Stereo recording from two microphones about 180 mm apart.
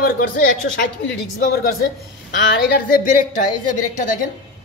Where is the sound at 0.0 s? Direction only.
55° left (ahead or behind).